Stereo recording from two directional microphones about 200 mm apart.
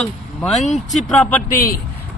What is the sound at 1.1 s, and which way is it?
Speech, 5° left (ahead or behind).